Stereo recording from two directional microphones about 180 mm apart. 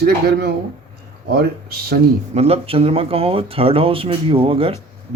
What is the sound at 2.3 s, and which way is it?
Speech, 35° right (ahead or behind).